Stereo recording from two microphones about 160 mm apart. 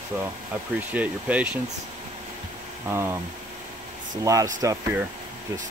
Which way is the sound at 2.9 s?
15° right (ahead or behind).